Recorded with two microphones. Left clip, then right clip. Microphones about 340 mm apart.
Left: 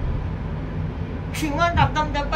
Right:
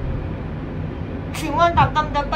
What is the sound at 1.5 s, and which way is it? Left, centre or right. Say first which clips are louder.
Speech: right 4 dB; centre.